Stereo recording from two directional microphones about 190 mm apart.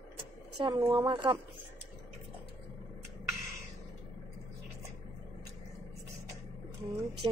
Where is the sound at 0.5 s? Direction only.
25° right (ahead or behind).